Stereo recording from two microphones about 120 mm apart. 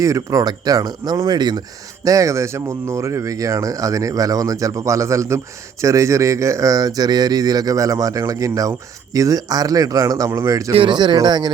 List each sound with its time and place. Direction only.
0.0 s speech: 25° right (ahead or behind)
10.7 s speech: 45° right (ahead or behind)